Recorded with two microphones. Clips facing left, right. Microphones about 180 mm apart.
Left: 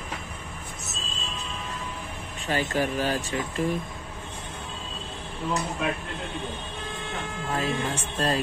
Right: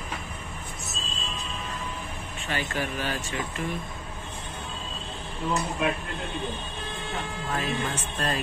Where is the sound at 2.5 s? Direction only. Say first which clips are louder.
Left 5 dB; 40° left (ahead or behind).